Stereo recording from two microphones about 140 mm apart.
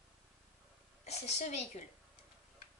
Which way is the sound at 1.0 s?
50° left (ahead or behind).